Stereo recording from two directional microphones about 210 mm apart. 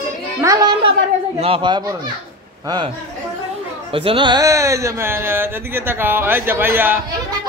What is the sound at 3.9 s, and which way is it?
Speech, 25° right (ahead or behind).